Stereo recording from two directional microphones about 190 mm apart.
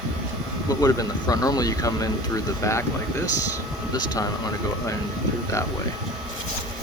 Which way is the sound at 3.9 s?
20° left (ahead or behind).